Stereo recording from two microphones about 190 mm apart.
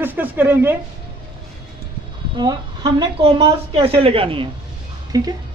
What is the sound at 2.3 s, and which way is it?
Speech, 20° right (ahead or behind).